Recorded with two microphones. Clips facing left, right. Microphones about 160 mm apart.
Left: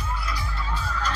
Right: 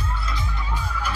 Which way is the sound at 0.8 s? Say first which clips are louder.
Even; 15° right (ahead or behind).